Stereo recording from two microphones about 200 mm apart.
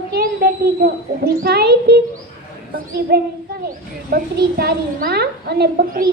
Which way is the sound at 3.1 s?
55° right (ahead or behind).